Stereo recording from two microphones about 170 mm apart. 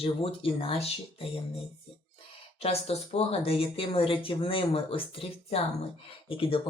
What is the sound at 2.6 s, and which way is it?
Speech, 35° left (ahead or behind).